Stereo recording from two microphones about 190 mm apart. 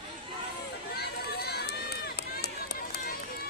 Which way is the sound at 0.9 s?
55° left (ahead or behind).